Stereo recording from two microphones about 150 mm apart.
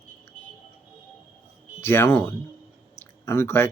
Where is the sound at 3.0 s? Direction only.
15° left (ahead or behind).